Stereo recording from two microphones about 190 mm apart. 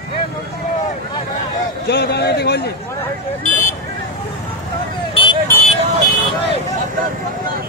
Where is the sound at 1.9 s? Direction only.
60° left (ahead or behind).